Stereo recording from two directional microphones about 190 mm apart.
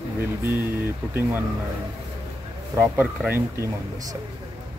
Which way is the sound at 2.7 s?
10° right (ahead or behind).